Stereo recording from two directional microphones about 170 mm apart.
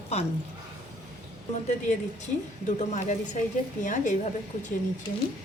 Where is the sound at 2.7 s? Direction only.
45° left (ahead or behind).